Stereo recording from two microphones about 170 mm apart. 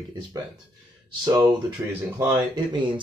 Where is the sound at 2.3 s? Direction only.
25° right (ahead or behind).